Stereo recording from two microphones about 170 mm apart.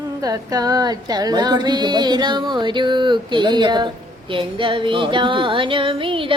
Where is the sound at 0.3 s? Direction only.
20° right (ahead or behind).